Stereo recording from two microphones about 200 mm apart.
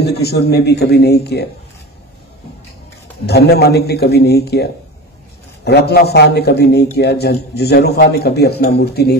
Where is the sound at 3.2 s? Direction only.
55° left (ahead or behind).